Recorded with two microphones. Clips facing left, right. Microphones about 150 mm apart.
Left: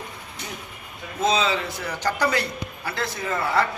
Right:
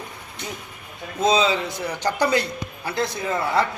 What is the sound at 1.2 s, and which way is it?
Speech, 15° right (ahead or behind).